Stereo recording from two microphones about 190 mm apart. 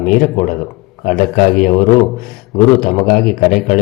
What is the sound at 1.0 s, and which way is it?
Speech, 50° left (ahead or behind).